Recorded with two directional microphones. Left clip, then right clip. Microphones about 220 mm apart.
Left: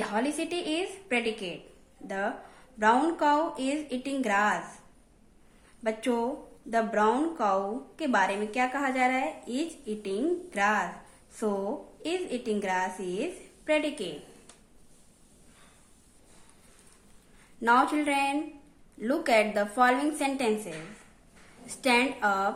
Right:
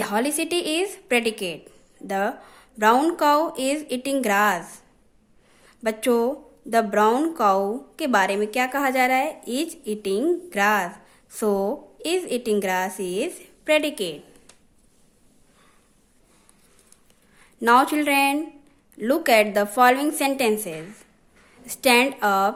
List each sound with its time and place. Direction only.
0.0 s a woman's voice: 45° right (ahead or behind)
5.8 s a woman's voice: 45° right (ahead or behind)
17.6 s a woman's voice: 40° right (ahead or behind)